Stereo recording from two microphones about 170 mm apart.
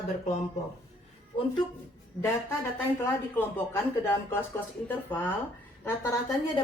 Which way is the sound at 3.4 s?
10° left (ahead or behind).